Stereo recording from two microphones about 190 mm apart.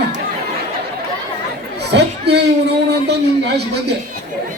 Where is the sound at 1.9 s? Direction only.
60° right (ahead or behind).